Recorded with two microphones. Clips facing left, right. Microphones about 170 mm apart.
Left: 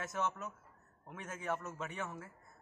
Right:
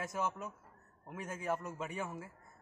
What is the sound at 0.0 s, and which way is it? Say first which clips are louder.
A man's voice: right 1 dB; 10° right (ahead or behind).